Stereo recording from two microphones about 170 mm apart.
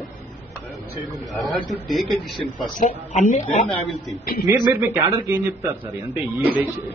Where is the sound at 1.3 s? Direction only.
Centre (ahead or behind).